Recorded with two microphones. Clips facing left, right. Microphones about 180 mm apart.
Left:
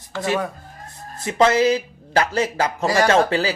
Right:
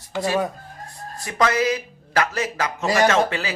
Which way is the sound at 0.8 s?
25° left (ahead or behind).